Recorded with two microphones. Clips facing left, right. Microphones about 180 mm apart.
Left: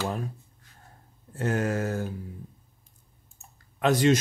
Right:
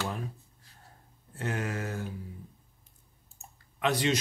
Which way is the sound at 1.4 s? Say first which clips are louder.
Left 7 dB; 45° left (ahead or behind).